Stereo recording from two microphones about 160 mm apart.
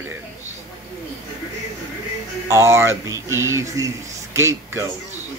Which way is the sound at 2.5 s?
15° right (ahead or behind).